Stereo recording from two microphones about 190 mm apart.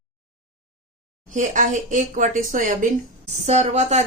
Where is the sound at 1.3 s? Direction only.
40° right (ahead or behind).